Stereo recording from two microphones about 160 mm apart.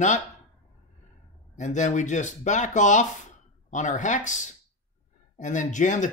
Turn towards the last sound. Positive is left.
turn(degrees=50)  # may be behind; listen again after turning